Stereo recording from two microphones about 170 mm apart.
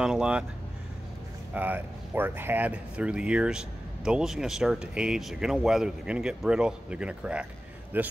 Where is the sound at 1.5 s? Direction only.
10° right (ahead or behind).